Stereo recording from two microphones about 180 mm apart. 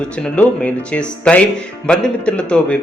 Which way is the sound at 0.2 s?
5° left (ahead or behind).